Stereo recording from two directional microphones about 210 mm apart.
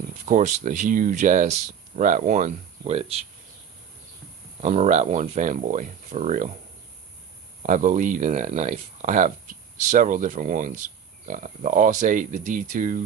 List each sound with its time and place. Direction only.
0.3 s speech: 35° right (ahead or behind)
4.6 s speech: 30° right (ahead or behind)
7.7 s speech: 35° right (ahead or behind)